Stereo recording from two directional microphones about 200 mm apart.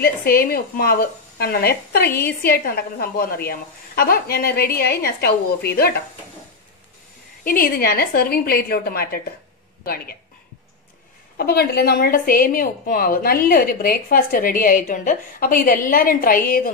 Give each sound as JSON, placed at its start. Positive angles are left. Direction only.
{"t": 0.0, "sound": "a woman's voice", "side_deg": 50}
{"t": 7.4, "sound": "a woman's voice", "side_deg": 45}
{"t": 11.3, "sound": "a woman's voice", "side_deg": 50}